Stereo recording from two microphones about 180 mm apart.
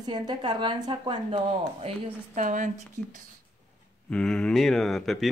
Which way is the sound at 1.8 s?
40° right (ahead or behind).